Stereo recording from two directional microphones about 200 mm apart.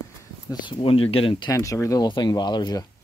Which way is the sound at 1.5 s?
15° left (ahead or behind).